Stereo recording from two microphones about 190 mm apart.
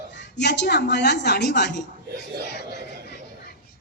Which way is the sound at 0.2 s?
65° left (ahead or behind).